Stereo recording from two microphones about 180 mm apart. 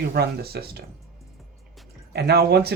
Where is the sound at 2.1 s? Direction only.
65° right (ahead or behind).